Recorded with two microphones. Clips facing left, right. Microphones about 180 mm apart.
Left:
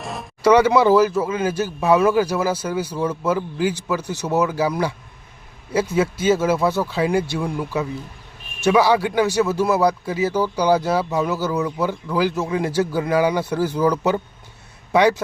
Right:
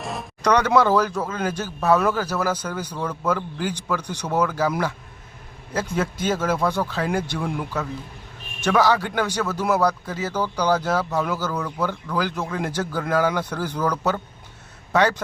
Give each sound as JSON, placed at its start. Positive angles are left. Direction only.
{"t": 0.0, "sound": "speech", "side_deg": 0}
{"t": 5.7, "sound": "speech", "side_deg": 5}
{"t": 7.4, "sound": "speech", "side_deg": 0}
{"t": 8.6, "sound": "speech", "side_deg": 10}